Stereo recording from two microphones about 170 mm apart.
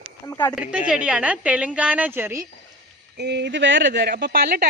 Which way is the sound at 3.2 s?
85° right.